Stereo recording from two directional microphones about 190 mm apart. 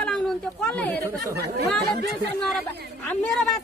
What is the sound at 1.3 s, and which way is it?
Speech, 60° right (ahead or behind).